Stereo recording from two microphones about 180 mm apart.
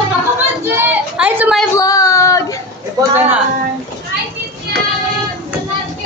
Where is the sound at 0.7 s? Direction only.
10° right (ahead or behind).